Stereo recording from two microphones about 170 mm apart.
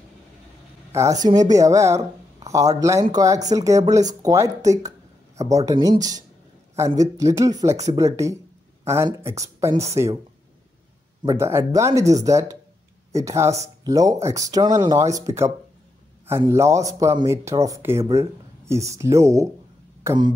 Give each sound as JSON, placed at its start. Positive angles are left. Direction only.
{"t": 0.9, "sound": "a woman's voice", "side_deg": -20}
{"t": 11.2, "sound": "a woman's voice", "side_deg": -15}
{"t": 20.0, "sound": "a sound", "side_deg": -15}